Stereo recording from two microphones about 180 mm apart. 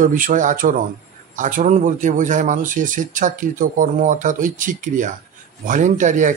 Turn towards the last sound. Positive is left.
turn(degrees=-45)  # may be behind; listen again after turning